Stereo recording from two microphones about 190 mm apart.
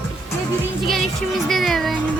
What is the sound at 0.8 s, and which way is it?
Speech, centre (ahead or behind).